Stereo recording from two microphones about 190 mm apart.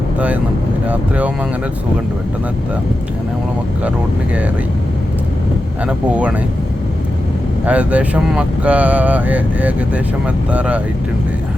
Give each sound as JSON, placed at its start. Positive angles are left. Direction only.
{"t": 0.9, "sound": "speech", "side_deg": -5}
{"t": 5.8, "sound": "speech", "side_deg": -5}
{"t": 7.6, "sound": "speech", "side_deg": -5}